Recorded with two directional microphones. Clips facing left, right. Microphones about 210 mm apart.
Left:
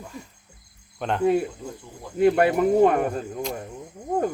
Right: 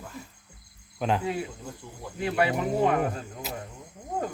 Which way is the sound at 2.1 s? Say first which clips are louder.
Left 8 dB; 50° left (ahead or behind).